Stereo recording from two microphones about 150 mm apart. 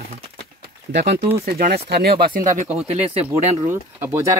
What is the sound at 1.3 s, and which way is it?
Speech, 85° right.